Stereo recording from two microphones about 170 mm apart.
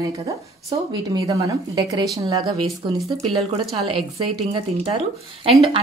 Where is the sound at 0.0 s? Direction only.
25° right (ahead or behind).